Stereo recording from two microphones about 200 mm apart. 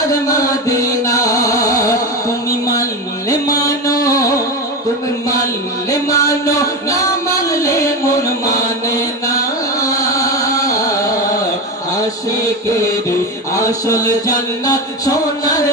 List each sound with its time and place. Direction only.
0.1 s music: 15° left (ahead or behind)
5.9 s music: 15° left (ahead or behind)
7.4 s chant: 15° left (ahead or behind)
12.3 s mantra: 15° left (ahead or behind)